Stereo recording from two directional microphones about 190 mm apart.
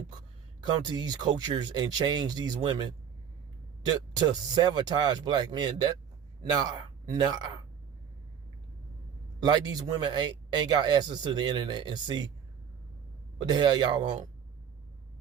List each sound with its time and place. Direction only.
0.6 s speech: 20° right (ahead or behind)
3.9 s speech: 20° right (ahead or behind)
9.4 s speech: 20° right (ahead or behind)
13.4 s speech: 20° right (ahead or behind)